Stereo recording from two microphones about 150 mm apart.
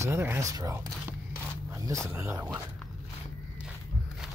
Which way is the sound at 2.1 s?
15° right (ahead or behind).